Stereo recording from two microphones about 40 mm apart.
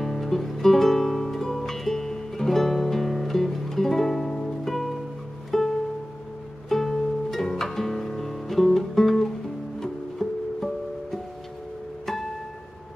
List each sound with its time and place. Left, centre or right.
0.0 s music: centre
6.7 s music: centre